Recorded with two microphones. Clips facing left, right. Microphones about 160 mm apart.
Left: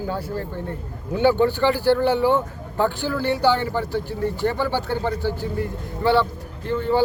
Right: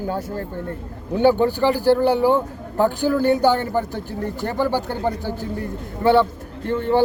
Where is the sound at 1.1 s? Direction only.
40° right (ahead or behind).